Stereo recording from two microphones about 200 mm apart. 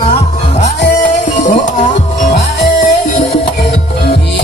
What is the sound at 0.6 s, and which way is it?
Music, 35° left (ahead or behind).